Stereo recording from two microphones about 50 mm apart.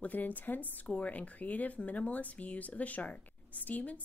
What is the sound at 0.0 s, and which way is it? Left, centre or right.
Speech, left.